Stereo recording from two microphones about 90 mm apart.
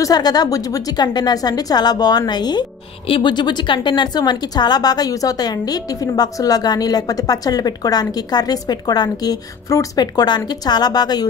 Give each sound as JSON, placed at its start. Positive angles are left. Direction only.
{"t": 0.0, "sound": "a woman's voice", "side_deg": 45}